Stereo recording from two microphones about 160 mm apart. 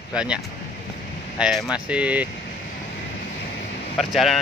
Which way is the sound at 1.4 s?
5° right (ahead or behind).